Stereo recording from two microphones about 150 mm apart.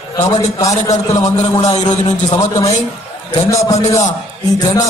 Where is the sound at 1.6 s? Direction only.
50° left (ahead or behind).